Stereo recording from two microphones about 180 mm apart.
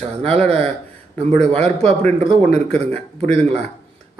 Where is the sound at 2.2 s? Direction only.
40° right (ahead or behind).